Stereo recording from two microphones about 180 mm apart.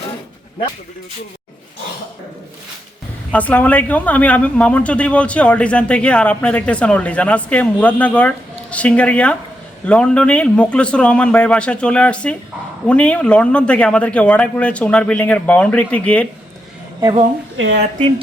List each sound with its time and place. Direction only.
3.3 s speech: 10° left (ahead or behind)
17.6 s speech: 90° right